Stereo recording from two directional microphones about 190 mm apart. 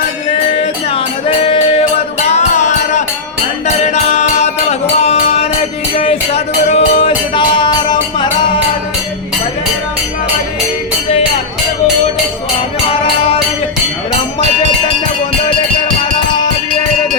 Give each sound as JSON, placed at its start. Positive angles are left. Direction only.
{"t": 2.2, "sound": "music", "side_deg": 35}
{"t": 12.9, "sound": "music", "side_deg": 30}